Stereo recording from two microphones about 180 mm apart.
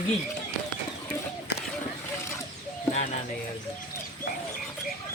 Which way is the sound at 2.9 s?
35° left (ahead or behind).